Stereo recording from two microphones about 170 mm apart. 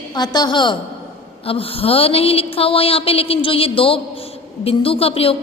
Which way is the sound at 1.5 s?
35° left (ahead or behind).